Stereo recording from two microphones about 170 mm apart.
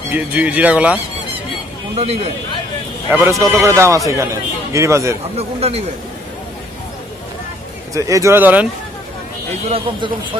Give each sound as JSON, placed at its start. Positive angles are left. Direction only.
{"t": 0.1, "sound": "a man's voice", "side_deg": -10}
{"t": 2.0, "sound": "speech", "side_deg": -35}
{"t": 3.2, "sound": "a man's voice", "side_deg": -15}
{"t": 5.4, "sound": "speech", "side_deg": -35}
{"t": 7.9, "sound": "a man's voice", "side_deg": -20}
{"t": 9.7, "sound": "speech", "side_deg": -30}